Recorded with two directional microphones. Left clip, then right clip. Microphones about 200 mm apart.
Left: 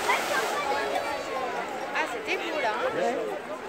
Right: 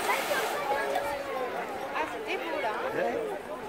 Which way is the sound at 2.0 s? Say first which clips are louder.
Left 4 dB; 35° left (ahead or behind).